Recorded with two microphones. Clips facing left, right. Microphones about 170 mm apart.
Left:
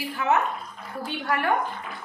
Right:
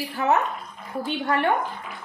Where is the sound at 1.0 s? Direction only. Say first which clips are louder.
Right 3 dB; 25° right (ahead or behind).